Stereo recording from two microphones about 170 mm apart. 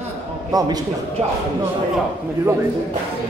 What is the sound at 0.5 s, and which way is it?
Speech, 20° right (ahead or behind).